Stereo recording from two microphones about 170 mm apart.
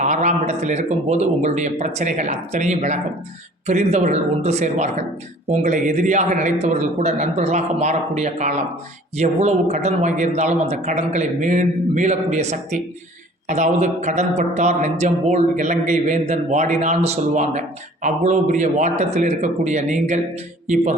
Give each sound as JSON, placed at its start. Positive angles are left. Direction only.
{"t": 0.0, "sound": "speech", "side_deg": -45}